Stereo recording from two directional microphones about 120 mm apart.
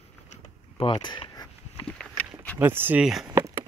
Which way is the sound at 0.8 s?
40° left (ahead or behind).